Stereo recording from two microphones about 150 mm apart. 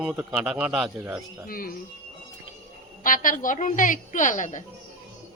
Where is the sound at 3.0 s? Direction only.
65° left (ahead or behind).